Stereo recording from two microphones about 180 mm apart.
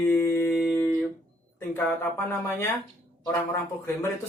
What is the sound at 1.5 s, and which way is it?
Speech, 10° left (ahead or behind).